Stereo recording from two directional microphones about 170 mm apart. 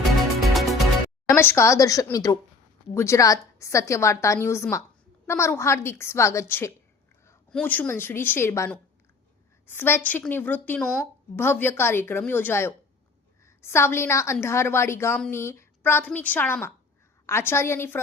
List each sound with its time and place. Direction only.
0.5 s music: centre (ahead or behind)
1.3 s a woman's voice: 15° left (ahead or behind)